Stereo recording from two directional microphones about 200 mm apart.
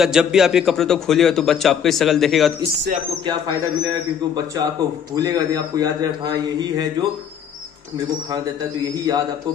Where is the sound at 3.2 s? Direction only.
20° right (ahead or behind).